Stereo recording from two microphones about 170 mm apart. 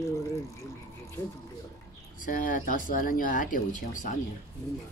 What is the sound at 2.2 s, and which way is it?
Speech, 55° left (ahead or behind).